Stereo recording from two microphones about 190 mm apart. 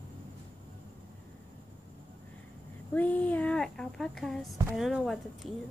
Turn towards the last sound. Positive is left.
turn(degrees=0)  # may be behind; listen again after turning